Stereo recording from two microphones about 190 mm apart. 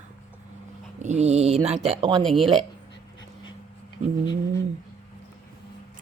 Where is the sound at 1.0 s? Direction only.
35° right (ahead or behind).